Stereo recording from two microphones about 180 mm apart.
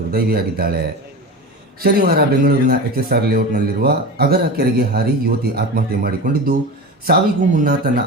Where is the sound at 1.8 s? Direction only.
55° right (ahead or behind).